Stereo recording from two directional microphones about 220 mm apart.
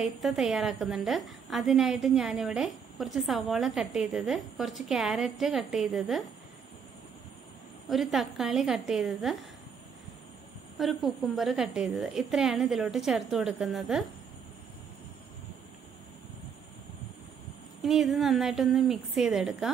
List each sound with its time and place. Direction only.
0.0 s a woman's voice: centre (ahead or behind)
7.9 s a woman's voice: centre (ahead or behind)
10.8 s a woman's voice: centre (ahead or behind)
17.8 s a woman's voice: centre (ahead or behind)